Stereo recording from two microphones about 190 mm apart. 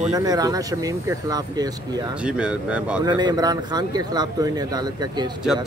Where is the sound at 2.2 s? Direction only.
5° right (ahead or behind).